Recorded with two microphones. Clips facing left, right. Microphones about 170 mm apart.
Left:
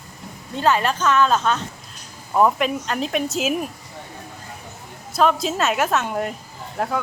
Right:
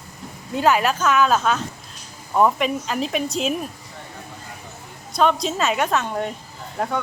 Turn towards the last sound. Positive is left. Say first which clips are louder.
# even
turn(degrees=0)  # may be behind; listen again after turning